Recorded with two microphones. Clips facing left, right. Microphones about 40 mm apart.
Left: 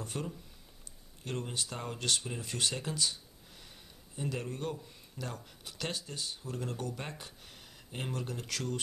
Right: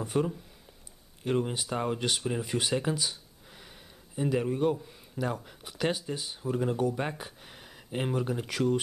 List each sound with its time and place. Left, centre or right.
0.0 s speech: centre